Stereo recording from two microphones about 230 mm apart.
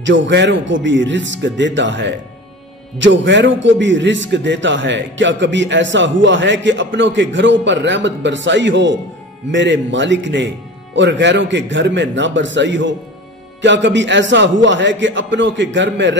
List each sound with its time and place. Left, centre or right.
0.0 s a man's voice: right